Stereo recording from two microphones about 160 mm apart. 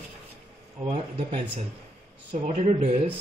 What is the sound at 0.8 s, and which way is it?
Speech, 30° right (ahead or behind).